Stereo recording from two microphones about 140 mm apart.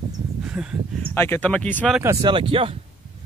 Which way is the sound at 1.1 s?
15° left (ahead or behind).